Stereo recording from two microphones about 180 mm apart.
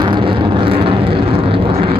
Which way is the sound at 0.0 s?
25° right (ahead or behind).